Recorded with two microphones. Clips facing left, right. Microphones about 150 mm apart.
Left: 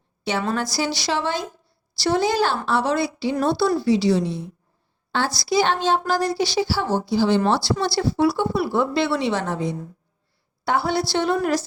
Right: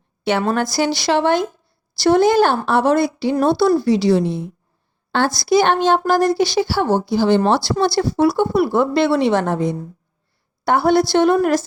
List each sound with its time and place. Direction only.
0.3 s a woman's voice: 60° right (ahead or behind)